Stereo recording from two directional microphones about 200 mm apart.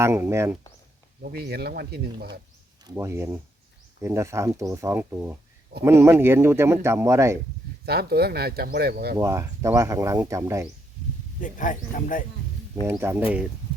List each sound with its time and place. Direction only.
0.0 s speech: 15° right (ahead or behind)
1.2 s speech: 50° right (ahead or behind)
2.8 s speech: 15° right (ahead or behind)
7.9 s speech: 50° right (ahead or behind)
9.1 s speech: 15° right (ahead or behind)
11.3 s speech: 40° left (ahead or behind)
12.7 s speech: 20° right (ahead or behind)